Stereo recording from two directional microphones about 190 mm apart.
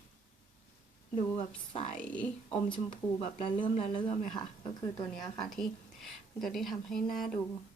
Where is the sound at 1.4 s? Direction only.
35° left (ahead or behind).